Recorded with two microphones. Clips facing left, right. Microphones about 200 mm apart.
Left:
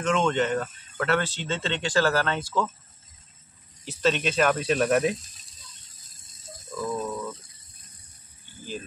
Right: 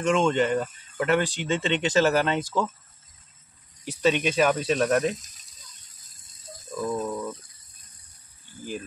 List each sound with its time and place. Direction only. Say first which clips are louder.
0.0 s speech: right 2 dB; 10° right (ahead or behind)
3.8 s speech: right 2 dB; 10° right (ahead or behind); by 5.1 s 5° left (ahead or behind)
6.7 s a sound: right 2 dB; 15° right (ahead or behind)